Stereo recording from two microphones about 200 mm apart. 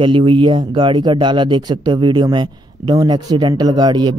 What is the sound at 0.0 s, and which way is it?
Speech, 25° right (ahead or behind).